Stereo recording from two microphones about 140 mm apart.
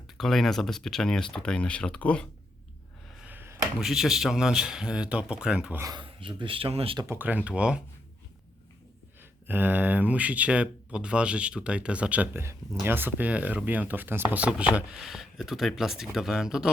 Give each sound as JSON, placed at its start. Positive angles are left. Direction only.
{"t": 0.2, "sound": "speech", "side_deg": 0}
{"t": 3.2, "sound": "a sound", "side_deg": -10}
{"t": 3.8, "sound": "speech", "side_deg": 0}
{"t": 5.8, "sound": "speech", "side_deg": -30}
{"t": 7.0, "sound": "speech", "side_deg": -15}
{"t": 9.5, "sound": "speech", "side_deg": -15}